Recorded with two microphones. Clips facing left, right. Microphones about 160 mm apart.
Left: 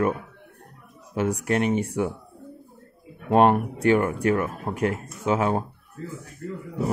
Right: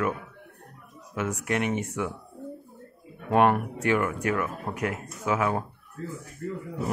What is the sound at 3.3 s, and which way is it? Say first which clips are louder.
Speech: left 3 dB; 30° left (ahead or behind).